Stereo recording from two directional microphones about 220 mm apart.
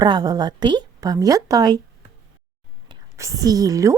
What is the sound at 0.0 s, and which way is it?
A woman's voice, 20° right (ahead or behind).